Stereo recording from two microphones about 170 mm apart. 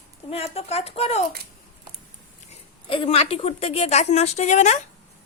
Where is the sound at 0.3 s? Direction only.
35° left (ahead or behind).